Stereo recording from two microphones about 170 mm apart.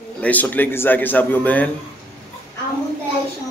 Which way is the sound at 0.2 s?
10° left (ahead or behind).